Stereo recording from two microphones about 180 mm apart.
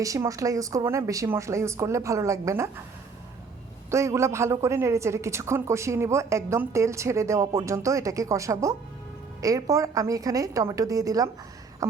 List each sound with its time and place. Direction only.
0.0 s speech: 20° right (ahead or behind)
3.9 s a woman's voice: 15° right (ahead or behind)